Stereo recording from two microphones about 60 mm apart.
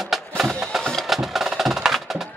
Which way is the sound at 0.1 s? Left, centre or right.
Centre.